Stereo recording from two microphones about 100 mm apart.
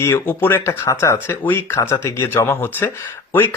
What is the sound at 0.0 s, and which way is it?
Speech, 25° left (ahead or behind).